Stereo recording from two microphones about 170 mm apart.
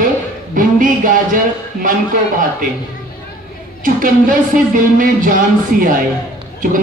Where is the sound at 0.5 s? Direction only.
50° right (ahead or behind).